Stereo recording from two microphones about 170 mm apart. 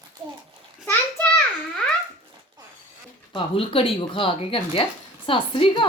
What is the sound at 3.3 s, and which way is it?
Speech, 35° left (ahead or behind).